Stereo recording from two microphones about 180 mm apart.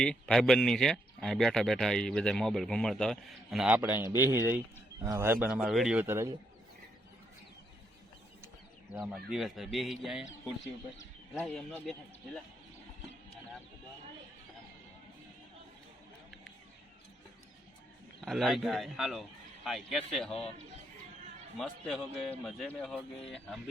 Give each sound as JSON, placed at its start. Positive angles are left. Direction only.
{"t": 0.0, "sound": "speech", "side_deg": 5}
{"t": 3.8, "sound": "speech", "side_deg": -15}
{"t": 9.0, "sound": "speech", "side_deg": 0}
{"t": 18.3, "sound": "speech", "side_deg": 0}
{"t": 21.6, "sound": "speech", "side_deg": 0}